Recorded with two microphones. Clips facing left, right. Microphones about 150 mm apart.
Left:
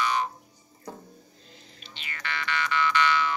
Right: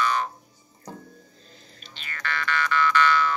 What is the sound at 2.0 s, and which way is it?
Music, 20° left (ahead or behind).